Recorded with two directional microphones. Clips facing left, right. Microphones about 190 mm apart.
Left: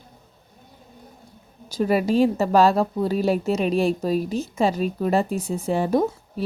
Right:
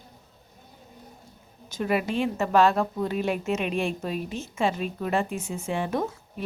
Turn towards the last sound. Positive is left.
turn(degrees=35)  # may be behind; listen again after turning